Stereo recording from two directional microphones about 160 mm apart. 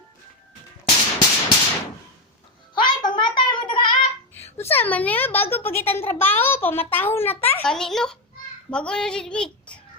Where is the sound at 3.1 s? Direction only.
30° left (ahead or behind).